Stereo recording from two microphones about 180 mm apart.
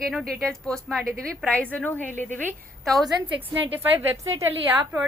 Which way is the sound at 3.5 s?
10° right (ahead or behind).